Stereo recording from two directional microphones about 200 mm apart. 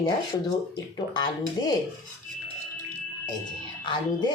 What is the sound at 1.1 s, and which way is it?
Speech, 20° left (ahead or behind).